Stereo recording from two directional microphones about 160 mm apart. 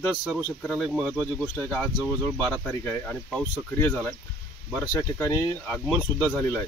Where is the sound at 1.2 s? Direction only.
5° left (ahead or behind).